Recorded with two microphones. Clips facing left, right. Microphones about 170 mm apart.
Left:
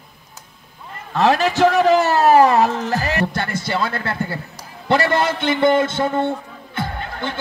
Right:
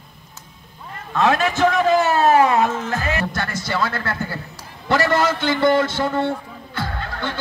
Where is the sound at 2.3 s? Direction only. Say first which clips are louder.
Left 4 dB; 35° left (ahead or behind).